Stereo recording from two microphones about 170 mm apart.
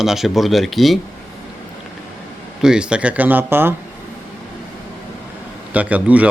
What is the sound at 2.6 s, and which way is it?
Speech, 5° right (ahead or behind).